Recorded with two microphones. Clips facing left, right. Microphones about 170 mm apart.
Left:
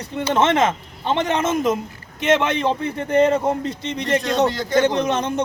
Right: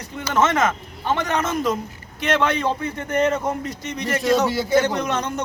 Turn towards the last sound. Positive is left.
turn(degrees=25)  # may be behind; listen again after turning